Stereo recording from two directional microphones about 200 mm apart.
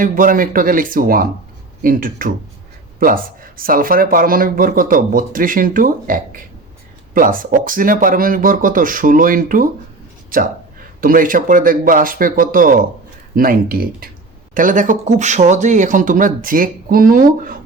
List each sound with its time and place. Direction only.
0.0 s speech: 40° right (ahead or behind)